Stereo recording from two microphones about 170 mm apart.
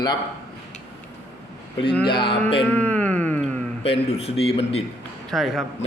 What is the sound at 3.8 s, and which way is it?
Speech, 35° left (ahead or behind).